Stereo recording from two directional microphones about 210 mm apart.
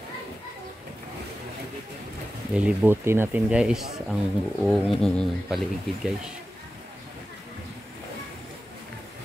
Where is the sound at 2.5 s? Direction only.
5° right (ahead or behind).